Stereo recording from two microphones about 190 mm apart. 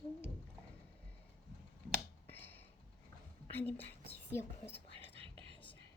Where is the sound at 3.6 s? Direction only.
10° left (ahead or behind).